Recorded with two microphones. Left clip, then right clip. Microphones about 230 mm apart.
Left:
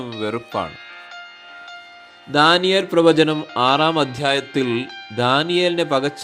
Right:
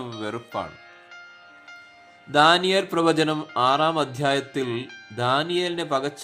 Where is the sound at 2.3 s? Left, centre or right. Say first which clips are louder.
Left 3 dB; centre.